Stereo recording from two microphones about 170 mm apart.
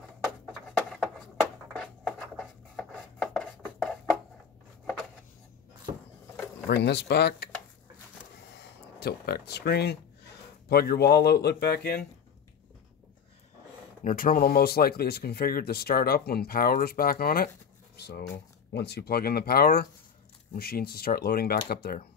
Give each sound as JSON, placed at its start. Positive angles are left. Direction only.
{"t": 0.7, "sound": "a sound", "side_deg": 10}
{"t": 6.7, "sound": "speech", "side_deg": 90}
{"t": 8.5, "sound": "speech", "side_deg": 70}
{"t": 14.0, "sound": "speech", "side_deg": 55}
{"t": 17.9, "sound": "speech", "side_deg": 75}